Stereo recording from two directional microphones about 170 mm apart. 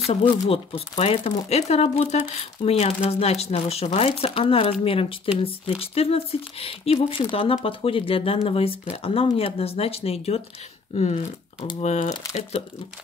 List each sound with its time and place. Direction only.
0.1 s speech: 30° left (ahead or behind)
11.8 s speech: 45° left (ahead or behind)